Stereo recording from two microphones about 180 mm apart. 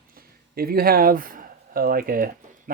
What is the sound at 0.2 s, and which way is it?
Speech, 60° right (ahead or behind).